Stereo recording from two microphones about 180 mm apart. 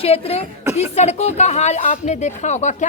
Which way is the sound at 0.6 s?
15° right (ahead or behind).